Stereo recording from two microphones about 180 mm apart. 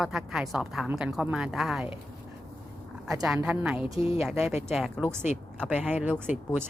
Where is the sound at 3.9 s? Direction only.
30° left (ahead or behind).